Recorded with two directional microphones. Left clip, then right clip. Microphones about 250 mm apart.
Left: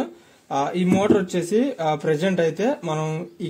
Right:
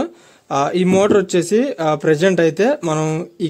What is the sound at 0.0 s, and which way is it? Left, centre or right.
Speech, right.